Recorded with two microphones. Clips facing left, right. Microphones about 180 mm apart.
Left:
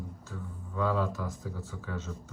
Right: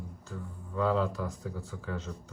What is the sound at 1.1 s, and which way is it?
Speech, 15° right (ahead or behind).